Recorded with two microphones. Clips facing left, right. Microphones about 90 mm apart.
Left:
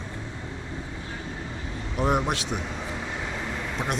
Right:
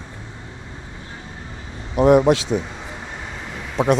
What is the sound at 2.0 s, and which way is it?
Speech, 90° right.